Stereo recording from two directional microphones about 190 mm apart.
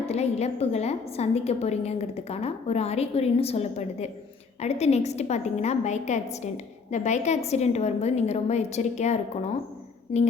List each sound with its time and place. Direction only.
0.1 s a woman's voice: 35° left (ahead or behind)